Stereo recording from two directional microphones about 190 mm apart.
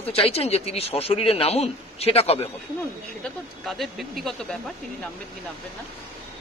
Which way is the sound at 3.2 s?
Centre (ahead or behind).